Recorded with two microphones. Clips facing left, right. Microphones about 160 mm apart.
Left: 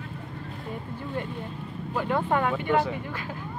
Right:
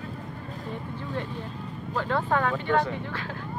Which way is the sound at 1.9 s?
10° left (ahead or behind).